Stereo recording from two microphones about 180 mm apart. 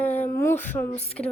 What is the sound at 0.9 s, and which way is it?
Speech, 35° left (ahead or behind).